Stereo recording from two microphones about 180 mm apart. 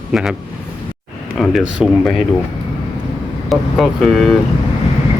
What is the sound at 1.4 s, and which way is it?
Speech, centre (ahead or behind).